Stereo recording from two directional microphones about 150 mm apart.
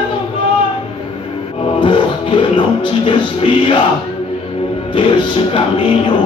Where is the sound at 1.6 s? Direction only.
35° left (ahead or behind).